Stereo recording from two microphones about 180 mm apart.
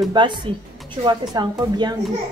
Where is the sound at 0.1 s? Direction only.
25° right (ahead or behind).